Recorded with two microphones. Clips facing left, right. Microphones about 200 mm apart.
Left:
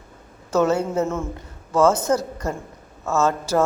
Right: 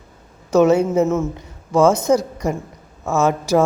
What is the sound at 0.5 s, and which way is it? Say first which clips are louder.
A man's voice: right 6 dB; 10° right (ahead or behind).